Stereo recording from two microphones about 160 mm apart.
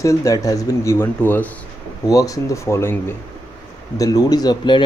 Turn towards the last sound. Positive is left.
turn(degrees=25)  # may be behind; listen again after turning